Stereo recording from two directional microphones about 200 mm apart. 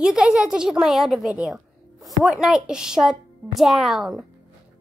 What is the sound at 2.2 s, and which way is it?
A child's voice, centre (ahead or behind).